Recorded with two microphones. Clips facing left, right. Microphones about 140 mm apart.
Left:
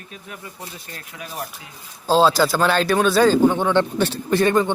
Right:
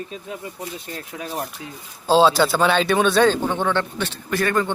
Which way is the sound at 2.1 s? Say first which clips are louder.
Right 1 dB; centre (ahead or behind).